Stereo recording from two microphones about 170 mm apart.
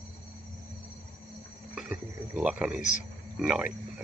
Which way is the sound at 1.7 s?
5° right (ahead or behind).